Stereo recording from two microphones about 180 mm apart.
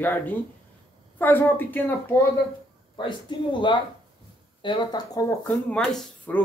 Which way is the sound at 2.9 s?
25° left (ahead or behind).